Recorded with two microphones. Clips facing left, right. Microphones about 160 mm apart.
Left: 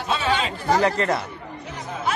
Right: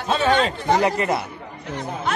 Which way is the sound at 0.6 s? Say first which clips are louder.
Left 4 dB; 15° right (ahead or behind).